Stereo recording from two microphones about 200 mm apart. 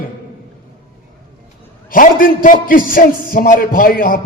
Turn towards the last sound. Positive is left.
turn(degrees=45)  # may be behind; listen again after turning